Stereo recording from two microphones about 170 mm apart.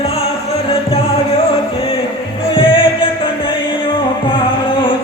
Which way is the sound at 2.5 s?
30° left (ahead or behind).